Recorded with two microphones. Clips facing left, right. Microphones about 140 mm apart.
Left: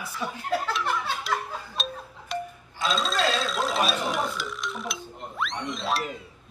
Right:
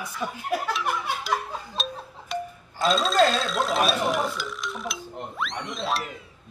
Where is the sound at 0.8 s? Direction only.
15° right (ahead or behind).